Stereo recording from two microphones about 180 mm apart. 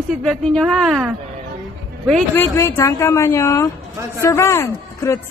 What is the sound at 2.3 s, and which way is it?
Speech, 15° left (ahead or behind).